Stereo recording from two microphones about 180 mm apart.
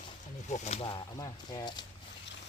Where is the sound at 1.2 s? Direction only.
20° left (ahead or behind).